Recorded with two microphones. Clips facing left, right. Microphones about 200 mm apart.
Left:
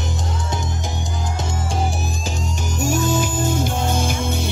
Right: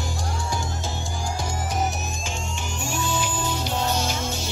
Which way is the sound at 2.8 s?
45° left (ahead or behind).